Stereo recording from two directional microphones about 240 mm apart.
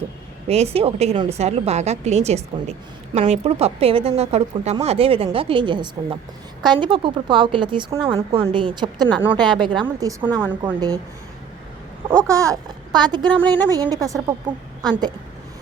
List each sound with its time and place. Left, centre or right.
0.4 s a woman's voice: right
12.0 s speech: centre
13.3 s speech: centre
13.7 s a woman's voice: centre